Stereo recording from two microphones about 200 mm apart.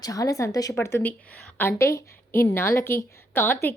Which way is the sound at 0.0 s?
15° left (ahead or behind).